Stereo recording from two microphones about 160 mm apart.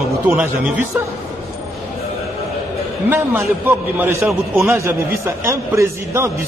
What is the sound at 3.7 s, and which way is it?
A man's voice, 15° right (ahead or behind).